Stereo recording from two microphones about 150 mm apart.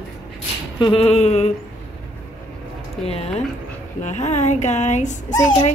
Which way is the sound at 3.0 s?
45° left (ahead or behind).